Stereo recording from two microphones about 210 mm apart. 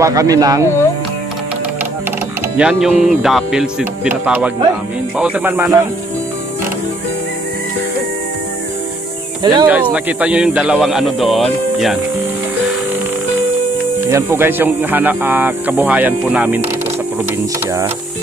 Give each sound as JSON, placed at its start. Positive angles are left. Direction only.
{"t": 0.0, "sound": "speech", "side_deg": -15}
{"t": 2.5, "sound": "speech", "side_deg": -5}
{"t": 9.4, "sound": "speech", "side_deg": -20}
{"t": 9.7, "sound": "speech", "side_deg": -5}
{"t": 14.0, "sound": "speech", "side_deg": -10}